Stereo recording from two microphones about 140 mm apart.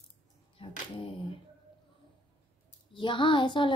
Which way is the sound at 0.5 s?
40° left (ahead or behind).